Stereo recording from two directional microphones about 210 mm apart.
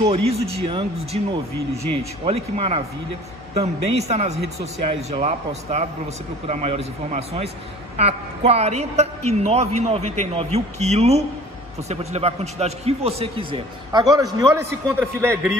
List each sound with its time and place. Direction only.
0.0 s a man's voice: 30° right (ahead or behind); by 15.5 s 10° right (ahead or behind)